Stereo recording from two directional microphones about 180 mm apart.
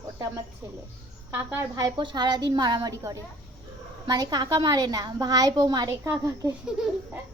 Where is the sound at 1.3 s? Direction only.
15° right (ahead or behind).